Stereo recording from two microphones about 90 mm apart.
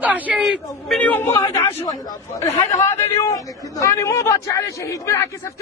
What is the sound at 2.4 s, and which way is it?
Speech, 35° left (ahead or behind).